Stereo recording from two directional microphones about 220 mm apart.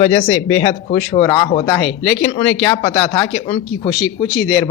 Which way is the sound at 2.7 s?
20° left (ahead or behind).